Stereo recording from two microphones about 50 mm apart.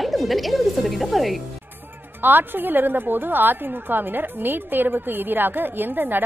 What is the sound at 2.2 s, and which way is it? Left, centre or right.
A woman's voice, right.